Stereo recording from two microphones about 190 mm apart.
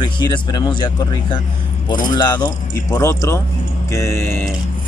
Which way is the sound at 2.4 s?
20° left (ahead or behind).